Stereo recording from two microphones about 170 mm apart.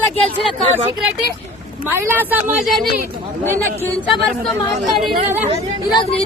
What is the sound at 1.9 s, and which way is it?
Speech, 10° right (ahead or behind).